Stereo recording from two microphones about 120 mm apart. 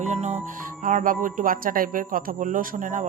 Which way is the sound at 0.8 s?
90° right.